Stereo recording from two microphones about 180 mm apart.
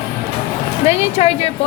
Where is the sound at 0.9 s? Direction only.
35° left (ahead or behind).